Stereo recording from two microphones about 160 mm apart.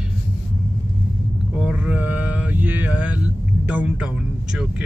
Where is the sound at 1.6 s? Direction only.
10° right (ahead or behind).